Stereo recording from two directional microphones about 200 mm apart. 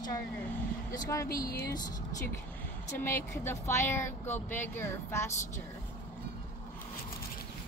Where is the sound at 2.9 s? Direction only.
10° left (ahead or behind).